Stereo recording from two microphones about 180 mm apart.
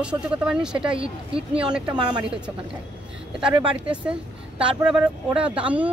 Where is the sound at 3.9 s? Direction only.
5° right (ahead or behind).